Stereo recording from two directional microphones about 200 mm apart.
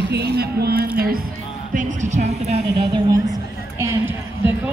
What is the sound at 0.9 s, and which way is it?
Music, 45° right (ahead or behind).